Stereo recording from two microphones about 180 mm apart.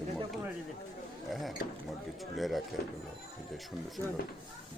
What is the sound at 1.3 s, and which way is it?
Speech, centre (ahead or behind).